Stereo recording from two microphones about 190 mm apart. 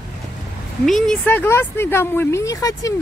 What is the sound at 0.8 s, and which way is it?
Speech, centre (ahead or behind).